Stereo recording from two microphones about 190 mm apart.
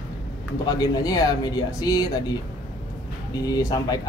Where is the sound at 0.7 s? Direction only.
20° left (ahead or behind).